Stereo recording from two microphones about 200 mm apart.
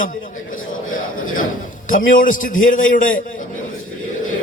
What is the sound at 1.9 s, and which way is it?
A man's voice, 40° left (ahead or behind).